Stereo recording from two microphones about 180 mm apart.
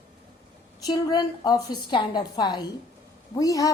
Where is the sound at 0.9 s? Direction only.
20° left (ahead or behind).